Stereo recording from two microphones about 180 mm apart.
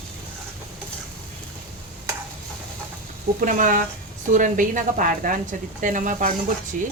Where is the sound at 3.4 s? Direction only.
45° right (ahead or behind).